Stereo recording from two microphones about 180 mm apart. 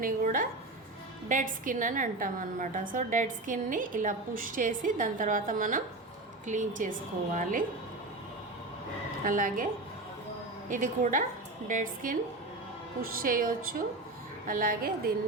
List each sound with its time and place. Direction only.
0.0 s a woman's voice: 50° right (ahead or behind)
9.2 s a woman's voice: 50° right (ahead or behind)
10.7 s a woman's voice: 45° right (ahead or behind)